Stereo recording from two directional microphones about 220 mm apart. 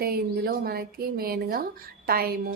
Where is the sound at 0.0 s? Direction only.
45° right (ahead or behind).